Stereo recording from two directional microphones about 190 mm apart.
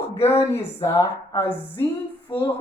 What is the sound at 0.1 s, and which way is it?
A woman's voice, 15° left (ahead or behind).